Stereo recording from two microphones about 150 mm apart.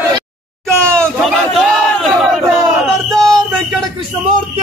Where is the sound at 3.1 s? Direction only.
25° right (ahead or behind).